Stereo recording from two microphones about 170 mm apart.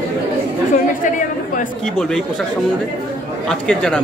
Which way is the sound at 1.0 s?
50° left (ahead or behind).